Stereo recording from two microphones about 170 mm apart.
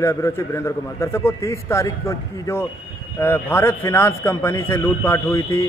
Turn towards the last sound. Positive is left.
turn(degrees=15)  # may be behind; listen again after turning